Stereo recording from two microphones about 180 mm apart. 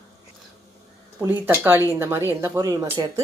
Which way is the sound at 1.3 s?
15° right (ahead or behind).